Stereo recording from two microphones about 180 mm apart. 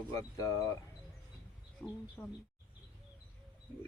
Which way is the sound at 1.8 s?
10° left (ahead or behind).